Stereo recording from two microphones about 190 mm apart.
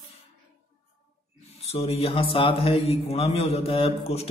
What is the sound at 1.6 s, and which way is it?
A man's voice, 35° left (ahead or behind).